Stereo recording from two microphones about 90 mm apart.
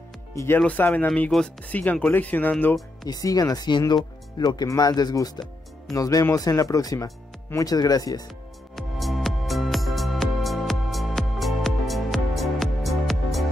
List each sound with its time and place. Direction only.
0.6 s speech: 15° left (ahead or behind)
3.1 s speech: 40° left (ahead or behind)
8.7 s music: centre (ahead or behind)